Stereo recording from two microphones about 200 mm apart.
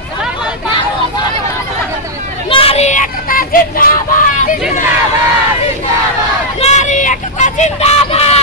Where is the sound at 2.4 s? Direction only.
30° left (ahead or behind); by 4.6 s 45° left (ahead or behind).